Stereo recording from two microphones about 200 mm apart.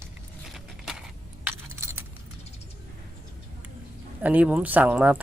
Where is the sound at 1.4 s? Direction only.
15° right (ahead or behind).